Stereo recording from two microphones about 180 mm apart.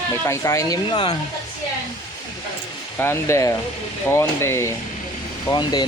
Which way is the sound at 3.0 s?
15° left (ahead or behind).